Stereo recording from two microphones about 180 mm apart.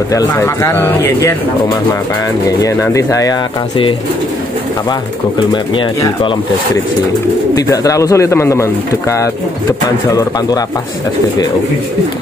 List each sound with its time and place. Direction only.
0.1 s speech: 15° left (ahead or behind)
2.4 s speech: 20° left (ahead or behind)
5.5 s speech: 25° left (ahead or behind)
7.5 s speech: 20° left (ahead or behind)